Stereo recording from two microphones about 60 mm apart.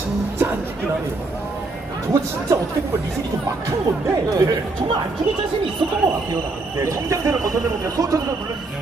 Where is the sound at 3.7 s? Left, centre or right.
Right.